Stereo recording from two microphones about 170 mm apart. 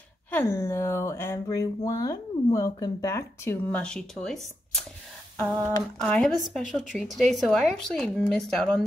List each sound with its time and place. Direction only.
0.3 s speech: 15° left (ahead or behind)
3.7 s speech: 5° left (ahead or behind)
5.9 s speech: 5° left (ahead or behind)